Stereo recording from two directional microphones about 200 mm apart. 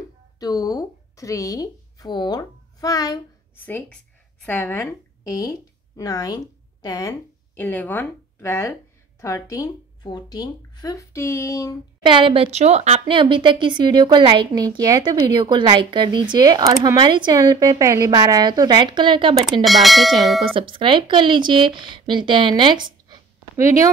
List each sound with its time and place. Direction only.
0.4 s speech: 15° left (ahead or behind)
12.0 s a woman's voice: 25° right (ahead or behind)
19.6 s speech: centre (ahead or behind)
20.5 s speech: 25° right (ahead or behind)